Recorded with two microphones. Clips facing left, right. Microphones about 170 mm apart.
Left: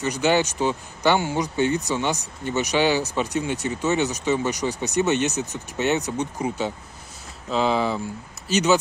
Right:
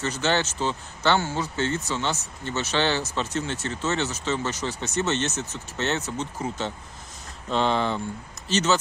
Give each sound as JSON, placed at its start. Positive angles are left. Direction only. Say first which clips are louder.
{"t": 0.0, "sound": "speech", "louder": "left 4 dB", "side_deg": 15}
{"t": 7.4, "sound": "speech", "louder": "left 2 dB", "side_deg": 5}